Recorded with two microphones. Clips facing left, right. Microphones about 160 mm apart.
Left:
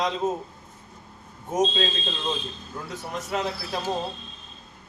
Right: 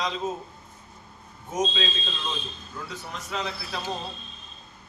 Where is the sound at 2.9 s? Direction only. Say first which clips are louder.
Left 6 dB; 50° left (ahead or behind).